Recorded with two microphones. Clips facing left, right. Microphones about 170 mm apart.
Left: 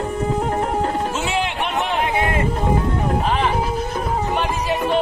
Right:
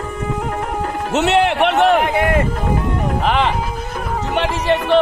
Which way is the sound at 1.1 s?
70° right (ahead or behind).